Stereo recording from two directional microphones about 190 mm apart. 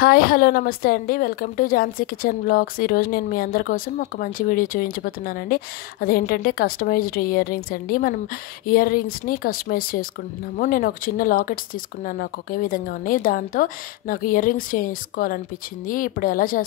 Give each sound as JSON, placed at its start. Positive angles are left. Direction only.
{"t": 0.0, "sound": "a woman's voice", "side_deg": 50}